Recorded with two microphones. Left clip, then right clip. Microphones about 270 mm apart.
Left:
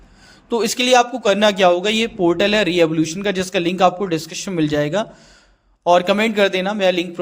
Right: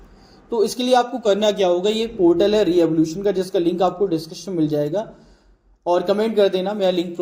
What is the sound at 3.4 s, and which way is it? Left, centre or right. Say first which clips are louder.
Speech: even; left.